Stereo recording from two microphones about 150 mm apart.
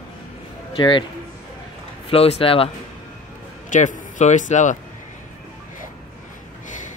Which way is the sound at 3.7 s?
55° left (ahead or behind).